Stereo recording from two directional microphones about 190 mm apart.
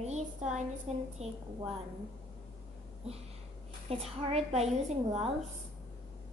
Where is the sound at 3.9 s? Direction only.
30° right (ahead or behind).